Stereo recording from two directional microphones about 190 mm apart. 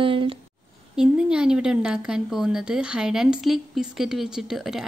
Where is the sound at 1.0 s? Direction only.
5° right (ahead or behind).